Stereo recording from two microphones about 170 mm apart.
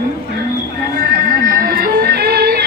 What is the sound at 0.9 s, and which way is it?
Music, 55° right (ahead or behind).